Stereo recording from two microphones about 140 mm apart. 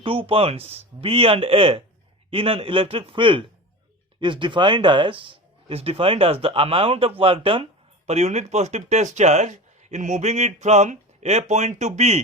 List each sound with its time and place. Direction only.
0.0 s speech: 40° right (ahead or behind)